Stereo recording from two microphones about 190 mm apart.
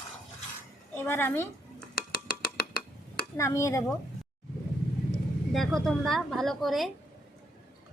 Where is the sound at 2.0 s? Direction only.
50° left (ahead or behind).